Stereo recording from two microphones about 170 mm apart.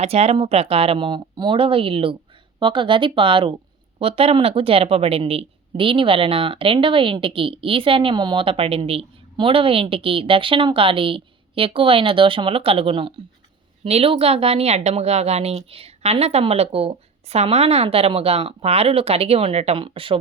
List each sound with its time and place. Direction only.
0.0 s a woman's voice: 40° right (ahead or behind)